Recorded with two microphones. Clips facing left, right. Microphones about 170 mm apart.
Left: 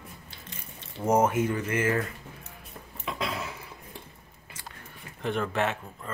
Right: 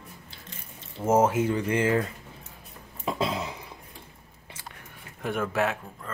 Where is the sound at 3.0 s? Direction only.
35° right (ahead or behind).